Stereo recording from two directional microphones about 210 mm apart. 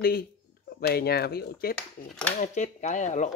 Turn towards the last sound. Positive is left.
turn(degrees=35)  # may be behind; listen again after turning